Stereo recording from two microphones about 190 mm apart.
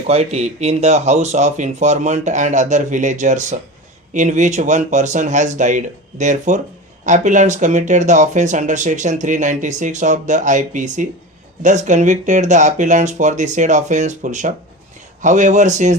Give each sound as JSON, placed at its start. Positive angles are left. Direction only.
{"t": 0.1, "sound": "speech", "side_deg": -35}